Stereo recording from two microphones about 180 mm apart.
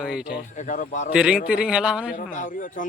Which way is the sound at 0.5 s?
45° left (ahead or behind).